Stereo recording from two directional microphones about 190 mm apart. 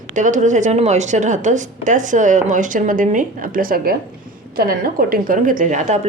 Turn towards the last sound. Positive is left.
turn(degrees=-40)  # may be behind; listen again after turning